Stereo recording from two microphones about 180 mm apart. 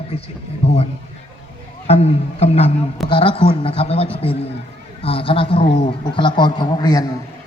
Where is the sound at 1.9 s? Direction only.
35° left (ahead or behind).